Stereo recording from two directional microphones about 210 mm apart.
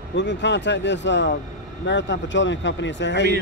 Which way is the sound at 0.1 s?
55° left (ahead or behind).